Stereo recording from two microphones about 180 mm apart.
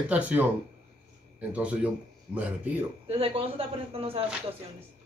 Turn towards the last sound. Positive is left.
turn(degrees=-30)  # may be behind; listen again after turning